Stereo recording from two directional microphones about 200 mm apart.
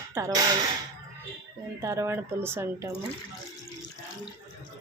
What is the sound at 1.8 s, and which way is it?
Speech, 15° right (ahead or behind).